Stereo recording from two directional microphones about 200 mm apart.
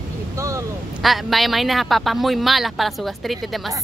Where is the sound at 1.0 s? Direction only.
Centre (ahead or behind).